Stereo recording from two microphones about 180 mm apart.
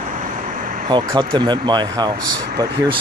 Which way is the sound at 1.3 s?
25° right (ahead or behind).